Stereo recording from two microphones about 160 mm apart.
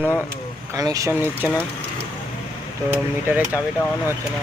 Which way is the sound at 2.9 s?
10° right (ahead or behind).